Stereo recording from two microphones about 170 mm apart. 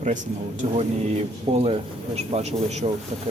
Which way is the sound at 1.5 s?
40° right (ahead or behind).